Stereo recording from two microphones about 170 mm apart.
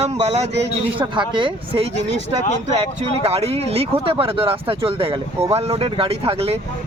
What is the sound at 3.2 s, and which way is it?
Speech, 35° right (ahead or behind).